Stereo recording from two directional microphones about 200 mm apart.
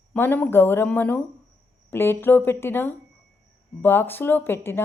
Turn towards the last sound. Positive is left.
turn(degrees=10)  # may be behind; listen again after turning